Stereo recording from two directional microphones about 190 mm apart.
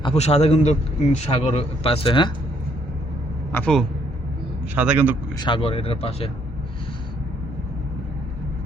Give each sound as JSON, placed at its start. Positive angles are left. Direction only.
{"t": 0.0, "sound": "a man's voice", "side_deg": 35}
{"t": 3.5, "sound": "speech", "side_deg": 5}
{"t": 4.7, "sound": "a man's voice", "side_deg": -10}
{"t": 5.4, "sound": "speech", "side_deg": 25}